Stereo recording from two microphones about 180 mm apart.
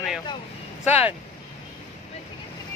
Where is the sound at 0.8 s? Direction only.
35° left (ahead or behind).